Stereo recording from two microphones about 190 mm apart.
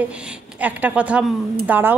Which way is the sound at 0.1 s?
5° right (ahead or behind).